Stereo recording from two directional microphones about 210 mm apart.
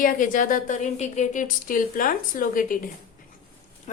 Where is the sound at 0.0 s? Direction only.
40° left (ahead or behind).